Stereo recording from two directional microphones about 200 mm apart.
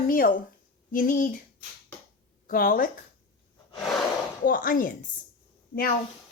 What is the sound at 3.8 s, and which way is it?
Snort, centre (ahead or behind).